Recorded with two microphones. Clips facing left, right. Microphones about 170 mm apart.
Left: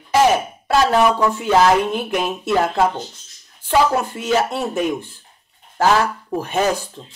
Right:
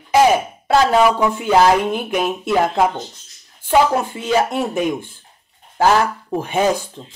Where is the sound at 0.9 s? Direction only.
10° right (ahead or behind).